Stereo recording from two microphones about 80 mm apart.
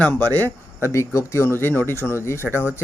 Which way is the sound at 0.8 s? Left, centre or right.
Left.